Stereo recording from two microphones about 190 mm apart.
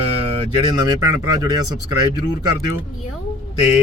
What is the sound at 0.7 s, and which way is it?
Speech, 20° right (ahead or behind).